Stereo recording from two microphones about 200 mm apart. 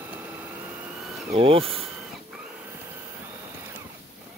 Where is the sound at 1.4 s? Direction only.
30° right (ahead or behind).